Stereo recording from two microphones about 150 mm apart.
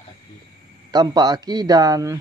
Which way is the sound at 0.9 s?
30° right (ahead or behind).